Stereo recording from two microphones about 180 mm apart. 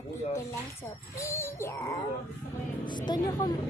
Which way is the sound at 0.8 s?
15° left (ahead or behind).